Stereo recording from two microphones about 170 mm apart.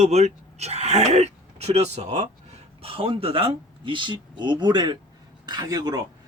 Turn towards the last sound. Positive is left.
turn(degrees=-25)  # may be behind; listen again after turning